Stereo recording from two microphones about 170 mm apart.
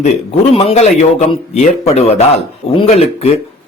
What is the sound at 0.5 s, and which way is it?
A man's voice, 40° left (ahead or behind).